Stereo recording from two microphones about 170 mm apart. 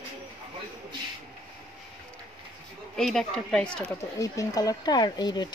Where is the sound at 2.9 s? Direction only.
Centre (ahead or behind).